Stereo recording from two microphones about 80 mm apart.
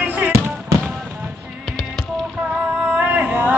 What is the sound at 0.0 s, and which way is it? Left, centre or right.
Music, right.